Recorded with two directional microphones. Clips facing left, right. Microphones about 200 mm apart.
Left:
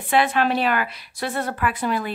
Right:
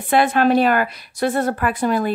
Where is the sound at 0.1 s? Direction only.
45° right (ahead or behind).